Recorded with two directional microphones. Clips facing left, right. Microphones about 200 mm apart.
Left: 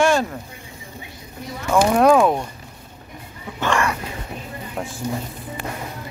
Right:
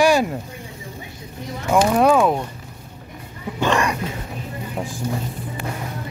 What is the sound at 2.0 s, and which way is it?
Speech, centre (ahead or behind).